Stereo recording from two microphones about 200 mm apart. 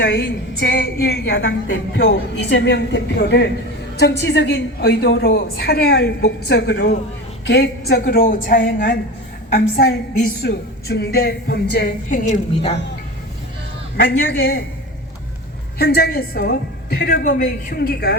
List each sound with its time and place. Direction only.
0.0 s a woman's voice: 60° left (ahead or behind); by 8.5 s 45° left (ahead or behind)
9.6 s a woman's voice: 45° left (ahead or behind)
12.1 s a woman's voice: 35° left (ahead or behind)
13.9 s a woman's voice: 50° left (ahead or behind)
15.8 s a woman's voice: 50° left (ahead or behind)